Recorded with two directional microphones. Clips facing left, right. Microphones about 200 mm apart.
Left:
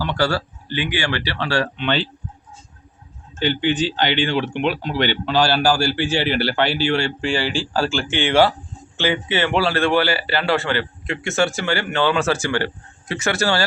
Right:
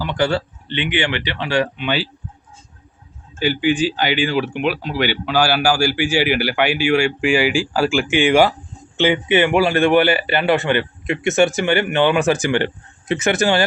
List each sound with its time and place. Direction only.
0.0 s a man's voice: 20° right (ahead or behind)
3.3 s a man's voice: 10° right (ahead or behind)